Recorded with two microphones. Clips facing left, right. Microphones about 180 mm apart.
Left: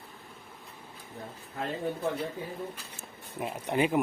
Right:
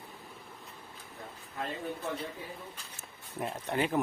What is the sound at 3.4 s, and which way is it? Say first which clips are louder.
Speech: left 3 dB; 5° left (ahead or behind).